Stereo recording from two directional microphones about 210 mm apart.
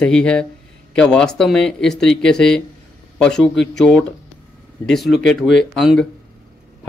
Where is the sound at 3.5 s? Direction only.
55° left (ahead or behind).